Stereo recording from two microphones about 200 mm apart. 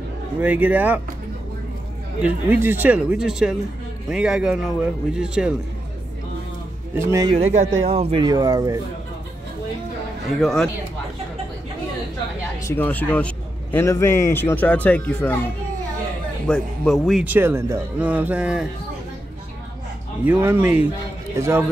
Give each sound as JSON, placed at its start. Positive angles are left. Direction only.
{"t": 0.4, "sound": "a man's voice", "side_deg": -10}
{"t": 2.2, "sound": "a man's voice", "side_deg": -10}
{"t": 6.9, "sound": "speech", "side_deg": -15}
{"t": 7.5, "sound": "speech", "side_deg": -30}
{"t": 10.3, "sound": "speech", "side_deg": 0}
{"t": 12.6, "sound": "a man's voice", "side_deg": 10}
{"t": 16.4, "sound": "a man's voice", "side_deg": 5}
{"t": 20.2, "sound": "a man's voice", "side_deg": -5}